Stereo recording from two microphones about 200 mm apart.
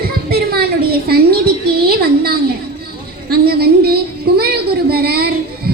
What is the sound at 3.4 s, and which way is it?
Child singing, 50° right (ahead or behind).